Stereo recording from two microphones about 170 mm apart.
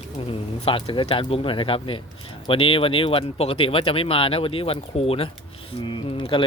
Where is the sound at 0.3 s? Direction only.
35° left (ahead or behind).